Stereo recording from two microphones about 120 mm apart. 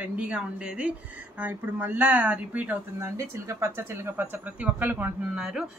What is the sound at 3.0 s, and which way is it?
Speech, 25° right (ahead or behind).